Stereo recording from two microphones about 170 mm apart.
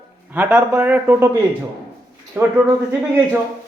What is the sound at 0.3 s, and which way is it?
Speech, 10° right (ahead or behind).